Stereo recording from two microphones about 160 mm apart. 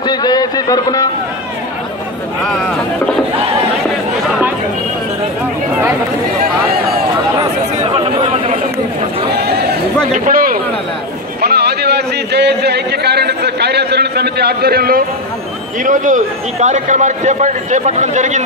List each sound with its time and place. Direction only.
0.0 s speech: 25° left (ahead or behind)
7.8 s chatter: 35° right (ahead or behind)
9.3 s a sound: 85° right
10.1 s speech: 55° right (ahead or behind)
11.4 s speech: 90° right; by 15.0 s 70° right (ahead or behind)
15.8 s a man's voice: 55° right (ahead or behind)